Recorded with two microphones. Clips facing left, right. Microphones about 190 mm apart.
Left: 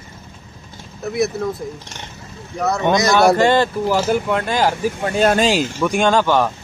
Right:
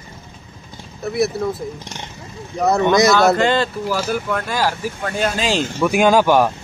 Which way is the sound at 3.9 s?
20° left (ahead or behind).